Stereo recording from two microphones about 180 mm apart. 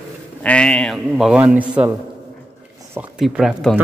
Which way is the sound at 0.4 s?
5° left (ahead or behind).